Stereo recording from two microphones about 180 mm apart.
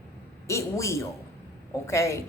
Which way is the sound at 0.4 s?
15° left (ahead or behind).